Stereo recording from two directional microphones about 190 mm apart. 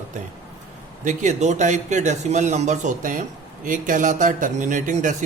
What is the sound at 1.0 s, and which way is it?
Speech, 40° right (ahead or behind).